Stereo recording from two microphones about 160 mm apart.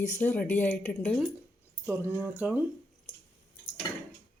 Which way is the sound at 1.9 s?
15° right (ahead or behind).